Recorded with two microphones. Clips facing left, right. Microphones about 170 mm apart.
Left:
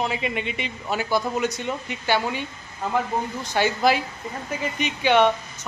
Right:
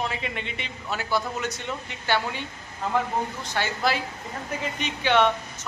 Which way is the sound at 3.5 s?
15° left (ahead or behind).